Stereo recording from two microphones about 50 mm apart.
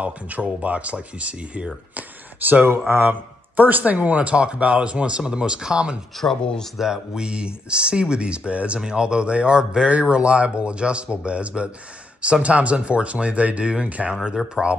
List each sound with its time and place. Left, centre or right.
0.0 s speech: right
2.9 s speech: right; by 5.9 s centre
6.4 s speech: centre
6.8 s speech: centre